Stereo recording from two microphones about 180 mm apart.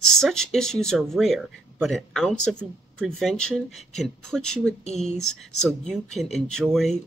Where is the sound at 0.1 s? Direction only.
5° left (ahead or behind).